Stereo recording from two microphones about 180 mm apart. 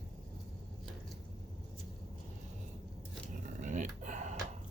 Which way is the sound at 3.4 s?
45° right (ahead or behind).